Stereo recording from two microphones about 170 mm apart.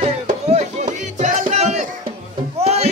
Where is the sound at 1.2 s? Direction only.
45° right (ahead or behind).